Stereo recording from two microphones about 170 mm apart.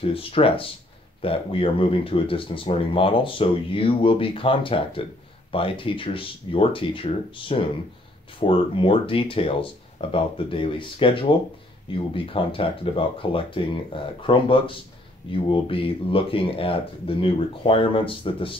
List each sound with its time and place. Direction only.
0.1 s speech: 35° left (ahead or behind)